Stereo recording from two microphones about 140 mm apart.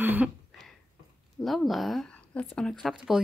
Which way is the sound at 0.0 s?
15° right (ahead or behind).